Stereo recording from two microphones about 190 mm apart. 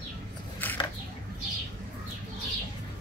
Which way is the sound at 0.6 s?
10° left (ahead or behind).